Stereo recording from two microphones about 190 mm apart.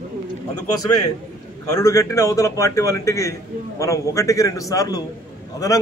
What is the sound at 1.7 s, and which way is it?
A man's voice, 15° left (ahead or behind).